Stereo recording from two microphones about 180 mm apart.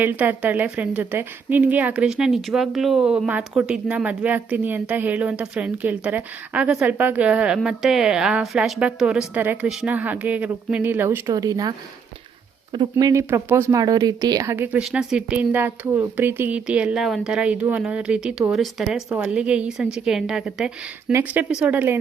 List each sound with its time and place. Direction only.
0.0 s a woman's voice: 10° right (ahead or behind)
12.7 s a woman's voice: 25° right (ahead or behind)